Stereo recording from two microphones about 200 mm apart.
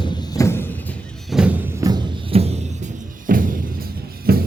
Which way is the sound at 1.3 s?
5° right (ahead or behind).